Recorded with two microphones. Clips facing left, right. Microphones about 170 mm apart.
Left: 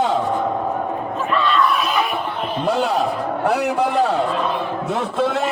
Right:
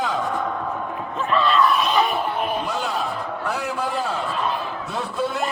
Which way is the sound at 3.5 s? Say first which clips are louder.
Left 8 dB; 70° left (ahead or behind).